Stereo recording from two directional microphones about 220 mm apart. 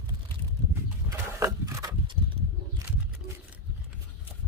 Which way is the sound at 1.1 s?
15° right (ahead or behind).